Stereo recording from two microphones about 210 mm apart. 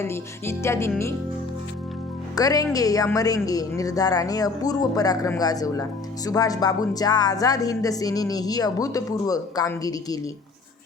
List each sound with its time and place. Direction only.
0.0 s speech: 10° left (ahead or behind)
2.3 s speech: 15° left (ahead or behind)